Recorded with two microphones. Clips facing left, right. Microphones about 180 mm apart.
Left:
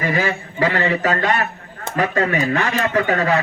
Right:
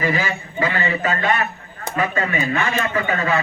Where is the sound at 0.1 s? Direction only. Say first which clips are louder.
Left 2 dB; 60° left (ahead or behind).